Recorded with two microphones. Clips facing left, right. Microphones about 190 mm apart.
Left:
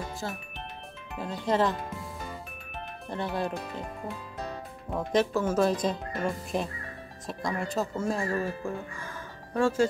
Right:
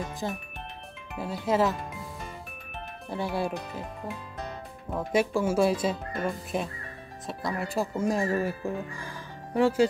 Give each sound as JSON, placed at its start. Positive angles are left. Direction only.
{"t": 0.2, "sound": "speech", "side_deg": -20}
{"t": 1.1, "sound": "speech", "side_deg": -5}
{"t": 3.1, "sound": "speech", "side_deg": -10}